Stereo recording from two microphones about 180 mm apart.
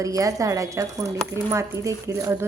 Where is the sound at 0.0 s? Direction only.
20° right (ahead or behind).